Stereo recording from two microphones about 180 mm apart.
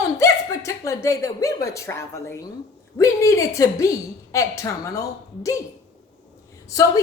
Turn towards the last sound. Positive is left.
turn(degrees=20)  # may be behind; listen again after turning